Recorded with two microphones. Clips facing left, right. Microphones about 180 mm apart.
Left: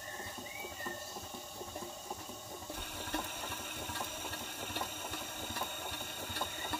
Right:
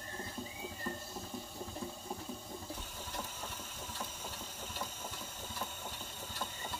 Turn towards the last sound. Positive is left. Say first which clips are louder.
# left 2 dB
turn(degrees=65)  # may be behind; listen again after turning